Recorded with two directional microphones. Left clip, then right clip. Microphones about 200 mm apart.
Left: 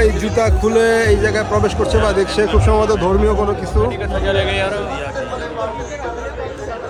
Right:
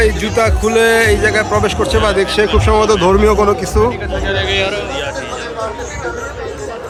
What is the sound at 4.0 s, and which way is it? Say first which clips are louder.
A man's voice: even; 60° left (ahead or behind).